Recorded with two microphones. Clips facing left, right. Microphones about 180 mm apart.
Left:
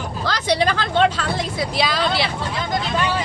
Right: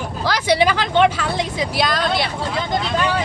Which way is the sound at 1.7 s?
Centre (ahead or behind).